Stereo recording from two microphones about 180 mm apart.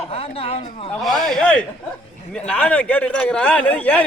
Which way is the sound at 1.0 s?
Centre (ahead or behind).